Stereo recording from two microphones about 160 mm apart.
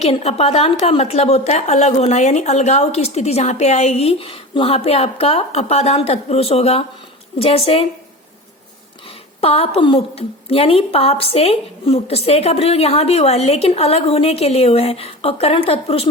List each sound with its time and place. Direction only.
0.0 s a woman's voice: 40° left (ahead or behind)
9.4 s a woman's voice: 40° left (ahead or behind)